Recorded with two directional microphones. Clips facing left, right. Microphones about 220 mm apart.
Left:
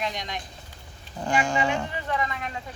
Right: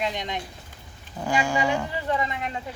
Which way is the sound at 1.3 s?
10° right (ahead or behind).